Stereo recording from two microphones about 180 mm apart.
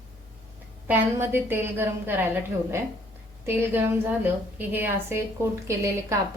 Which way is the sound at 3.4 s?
10° right (ahead or behind).